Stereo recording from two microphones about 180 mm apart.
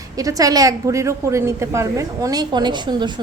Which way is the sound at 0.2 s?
20° right (ahead or behind).